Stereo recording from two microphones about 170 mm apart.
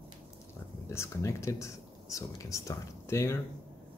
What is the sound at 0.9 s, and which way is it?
Speech, 15° left (ahead or behind).